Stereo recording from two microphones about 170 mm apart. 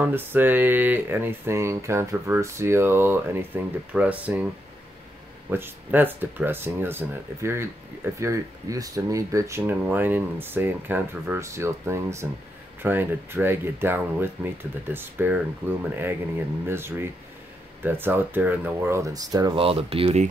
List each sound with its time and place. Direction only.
0.0 s speech: 10° right (ahead or behind)
5.5 s speech: 10° right (ahead or behind)
16.6 s speech: 15° right (ahead or behind); by 20.2 s 35° right (ahead or behind)